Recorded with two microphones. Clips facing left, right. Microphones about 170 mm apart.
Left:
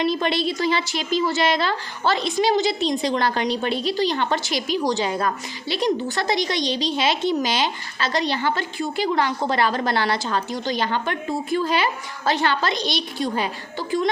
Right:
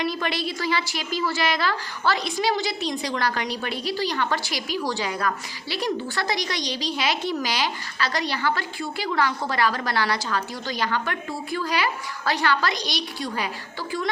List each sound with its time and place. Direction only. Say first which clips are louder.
0.0 s a woman's voice: left 5 dB; 25° left (ahead or behind)